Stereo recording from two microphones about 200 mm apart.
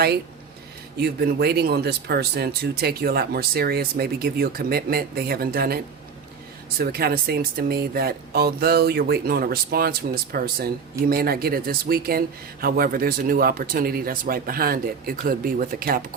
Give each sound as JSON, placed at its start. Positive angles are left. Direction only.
{"t": 0.9, "sound": "speech", "side_deg": -55}